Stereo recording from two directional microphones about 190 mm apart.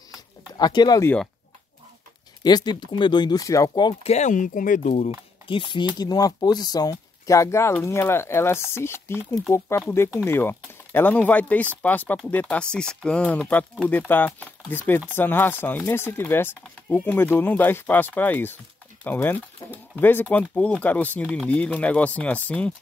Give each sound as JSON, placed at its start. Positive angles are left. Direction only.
{"t": 0.6, "sound": "speech", "side_deg": 20}
{"t": 2.4, "sound": "speech", "side_deg": 20}
{"t": 4.1, "sound": "speech", "side_deg": 40}
{"t": 5.5, "sound": "speech", "side_deg": 25}
{"t": 9.2, "sound": "speech", "side_deg": -5}
{"t": 9.5, "sound": "speech", "side_deg": 15}